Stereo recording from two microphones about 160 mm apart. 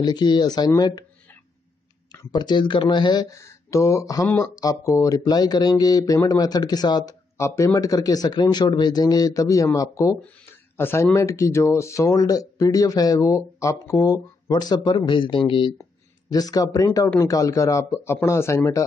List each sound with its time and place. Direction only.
0.0 s speech: 25° left (ahead or behind)
2.3 s speech: 30° left (ahead or behind)